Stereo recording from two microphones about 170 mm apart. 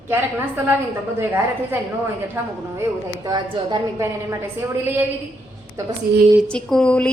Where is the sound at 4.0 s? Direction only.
15° right (ahead or behind).